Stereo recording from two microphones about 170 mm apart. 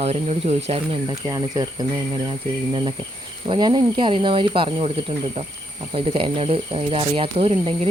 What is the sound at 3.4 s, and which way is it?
Speech, 30° right (ahead or behind).